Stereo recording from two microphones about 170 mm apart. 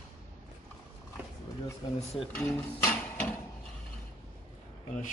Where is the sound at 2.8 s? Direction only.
10° left (ahead or behind).